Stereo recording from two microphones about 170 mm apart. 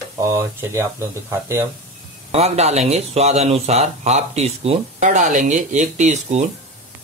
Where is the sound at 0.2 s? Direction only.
15° right (ahead or behind).